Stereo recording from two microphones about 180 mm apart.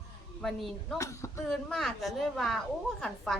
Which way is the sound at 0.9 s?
15° left (ahead or behind).